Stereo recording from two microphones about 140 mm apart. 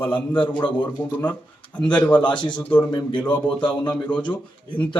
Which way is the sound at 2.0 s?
35° left (ahead or behind).